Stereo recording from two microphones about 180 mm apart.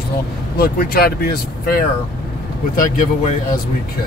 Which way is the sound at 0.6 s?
55° left (ahead or behind).